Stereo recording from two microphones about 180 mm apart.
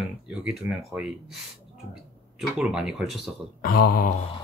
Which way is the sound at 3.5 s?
55° left (ahead or behind).